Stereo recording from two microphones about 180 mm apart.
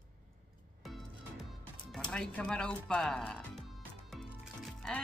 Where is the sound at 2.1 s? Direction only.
5° left (ahead or behind).